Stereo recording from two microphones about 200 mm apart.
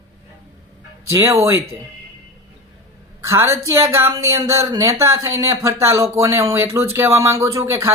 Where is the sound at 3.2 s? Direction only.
15° right (ahead or behind).